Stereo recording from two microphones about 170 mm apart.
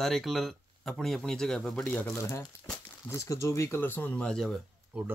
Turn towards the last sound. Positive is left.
turn(degrees=-5)  # may be behind; listen again after turning